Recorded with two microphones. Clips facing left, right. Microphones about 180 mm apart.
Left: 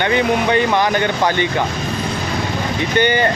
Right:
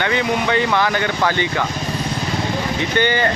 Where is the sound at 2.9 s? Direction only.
15° left (ahead or behind).